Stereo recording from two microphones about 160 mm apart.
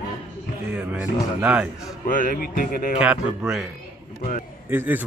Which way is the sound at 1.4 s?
10° right (ahead or behind).